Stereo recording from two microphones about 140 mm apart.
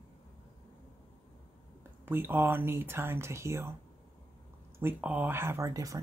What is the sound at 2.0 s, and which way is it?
Speech, 15° right (ahead or behind).